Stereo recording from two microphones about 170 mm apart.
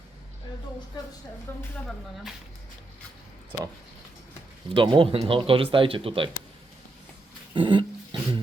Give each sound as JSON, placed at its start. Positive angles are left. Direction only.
{"t": 1.5, "sound": "speech", "side_deg": 10}
{"t": 4.7, "sound": "speech", "side_deg": -30}
{"t": 7.5, "sound": "a sound", "side_deg": -30}